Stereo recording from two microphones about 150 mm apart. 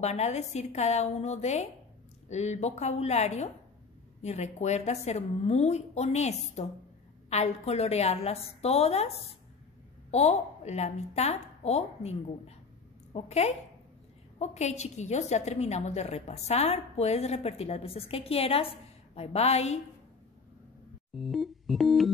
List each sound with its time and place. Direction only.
0.0 s a woman's voice: 45° left (ahead or behind)
10.1 s a woman's voice: 50° left (ahead or behind)
21.1 s keyboard: centre (ahead or behind)